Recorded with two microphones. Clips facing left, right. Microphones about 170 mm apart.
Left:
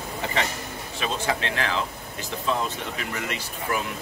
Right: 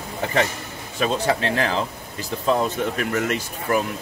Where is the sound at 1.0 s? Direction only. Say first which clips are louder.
Right 6 dB; 35° right (ahead or behind).